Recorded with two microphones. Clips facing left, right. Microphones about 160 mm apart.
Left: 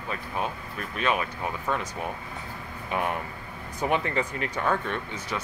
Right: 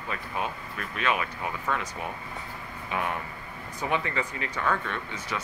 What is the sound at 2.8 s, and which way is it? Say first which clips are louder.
Speech: left 2 dB; 45° left (ahead or behind).